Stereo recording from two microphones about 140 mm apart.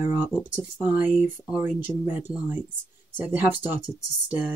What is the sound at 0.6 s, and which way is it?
Speech, 10° right (ahead or behind).